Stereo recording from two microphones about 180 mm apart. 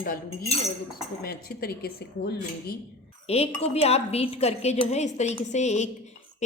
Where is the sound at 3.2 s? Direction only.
35° left (ahead or behind).